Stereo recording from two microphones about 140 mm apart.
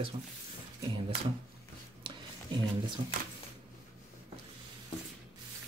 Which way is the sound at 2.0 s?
35° right (ahead or behind).